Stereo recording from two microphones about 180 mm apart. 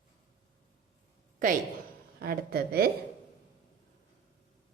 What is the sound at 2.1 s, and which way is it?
Speech, 60° right (ahead or behind).